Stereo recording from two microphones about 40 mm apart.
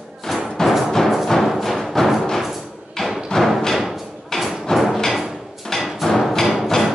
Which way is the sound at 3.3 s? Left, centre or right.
Centre.